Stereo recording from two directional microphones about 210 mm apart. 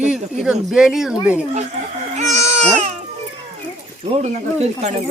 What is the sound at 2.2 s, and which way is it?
Babbling, 35° right (ahead or behind).